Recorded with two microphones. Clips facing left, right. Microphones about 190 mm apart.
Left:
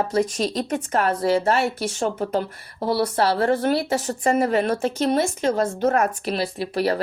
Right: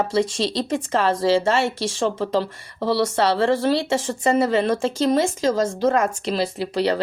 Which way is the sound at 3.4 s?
90° right.